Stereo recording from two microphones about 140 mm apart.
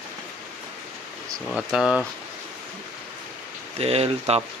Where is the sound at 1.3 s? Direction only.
Centre (ahead or behind).